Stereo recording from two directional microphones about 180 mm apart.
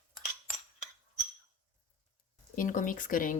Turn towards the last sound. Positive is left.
turn(degrees=50)  # may be behind; listen again after turning